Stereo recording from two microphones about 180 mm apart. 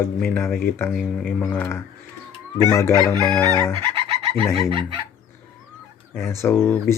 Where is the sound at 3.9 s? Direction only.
25° right (ahead or behind).